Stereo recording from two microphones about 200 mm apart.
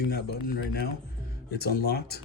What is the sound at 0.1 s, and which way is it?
Speech, 50° left (ahead or behind).